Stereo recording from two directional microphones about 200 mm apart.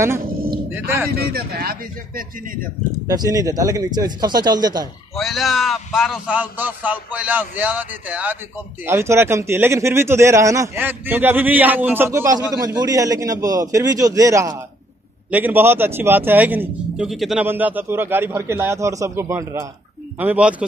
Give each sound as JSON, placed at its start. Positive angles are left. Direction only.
{"t": 0.7, "sound": "a sound", "side_deg": -10}
{"t": 1.1, "sound": "speech", "side_deg": -50}
{"t": 3.1, "sound": "speech", "side_deg": -20}
{"t": 5.1, "sound": "a man's voice", "side_deg": 0}